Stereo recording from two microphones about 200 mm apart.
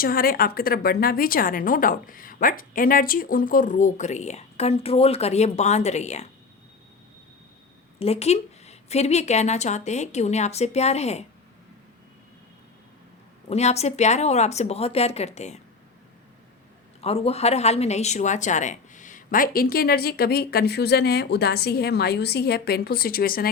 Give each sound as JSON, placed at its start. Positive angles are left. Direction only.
{"t": 0.0, "sound": "a woman's voice", "side_deg": 45}
{"t": 7.9, "sound": "a woman's voice", "side_deg": 30}
{"t": 13.5, "sound": "a woman's voice", "side_deg": 35}
{"t": 17.0, "sound": "a woman's voice", "side_deg": 30}